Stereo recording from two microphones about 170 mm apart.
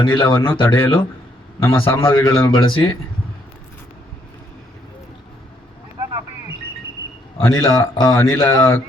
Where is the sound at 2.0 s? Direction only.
25° left (ahead or behind).